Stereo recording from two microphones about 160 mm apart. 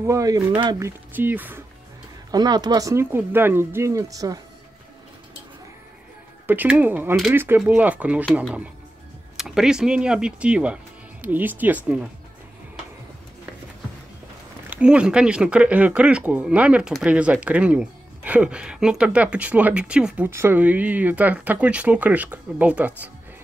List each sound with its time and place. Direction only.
0.0 s speech: 20° right (ahead or behind)
2.3 s speech: 25° right (ahead or behind)
6.4 s speech: 10° right (ahead or behind)
9.4 s speech: 5° right (ahead or behind)
14.7 s speech: 5° right (ahead or behind)